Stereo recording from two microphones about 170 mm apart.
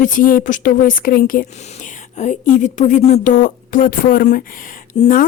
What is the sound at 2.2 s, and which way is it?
Speech, 45° left (ahead or behind).